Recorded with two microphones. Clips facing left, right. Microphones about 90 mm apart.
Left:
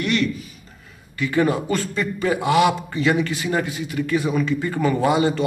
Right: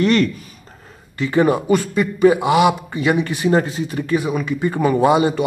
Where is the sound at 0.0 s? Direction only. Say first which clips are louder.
Right 6 dB; 40° right (ahead or behind).